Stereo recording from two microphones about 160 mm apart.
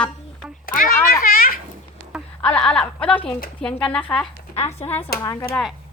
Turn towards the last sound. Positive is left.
turn(degrees=20)  # may be behind; listen again after turning